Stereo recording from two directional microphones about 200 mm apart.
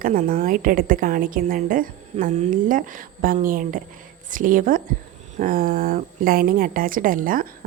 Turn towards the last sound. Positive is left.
turn(degrees=-45)  # may be behind; listen again after turning